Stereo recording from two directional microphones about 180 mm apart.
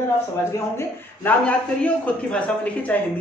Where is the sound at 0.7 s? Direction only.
10° left (ahead or behind).